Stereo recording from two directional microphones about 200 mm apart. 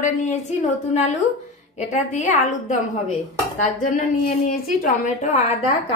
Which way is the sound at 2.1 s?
40° left (ahead or behind).